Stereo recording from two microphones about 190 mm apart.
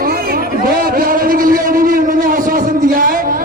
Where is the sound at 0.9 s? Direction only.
50° right (ahead or behind).